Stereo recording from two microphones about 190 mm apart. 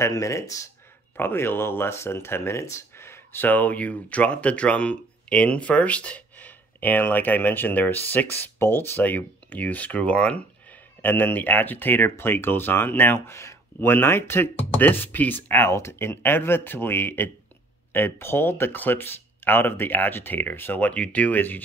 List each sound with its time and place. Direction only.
0.0 s speech: 15° left (ahead or behind)